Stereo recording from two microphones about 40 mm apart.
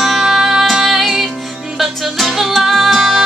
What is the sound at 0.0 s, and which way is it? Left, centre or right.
Music, centre.